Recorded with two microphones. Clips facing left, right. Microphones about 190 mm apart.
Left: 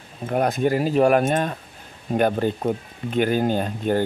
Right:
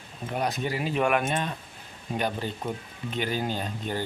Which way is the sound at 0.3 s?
55° left (ahead or behind).